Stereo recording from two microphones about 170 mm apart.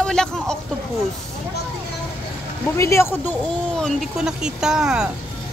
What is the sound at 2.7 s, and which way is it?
Speech, 15° left (ahead or behind).